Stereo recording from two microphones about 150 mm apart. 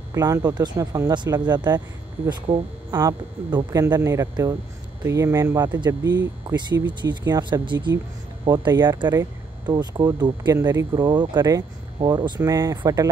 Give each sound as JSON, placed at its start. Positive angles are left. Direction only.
{"t": 0.1, "sound": "speech", "side_deg": -20}
{"t": 2.9, "sound": "speech", "side_deg": -15}
{"t": 3.4, "sound": "speech", "side_deg": -30}